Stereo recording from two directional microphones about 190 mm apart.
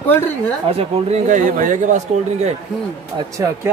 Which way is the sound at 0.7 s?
35° right (ahead or behind).